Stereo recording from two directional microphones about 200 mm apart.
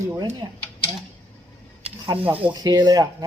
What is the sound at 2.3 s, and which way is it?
Speech, 20° right (ahead or behind).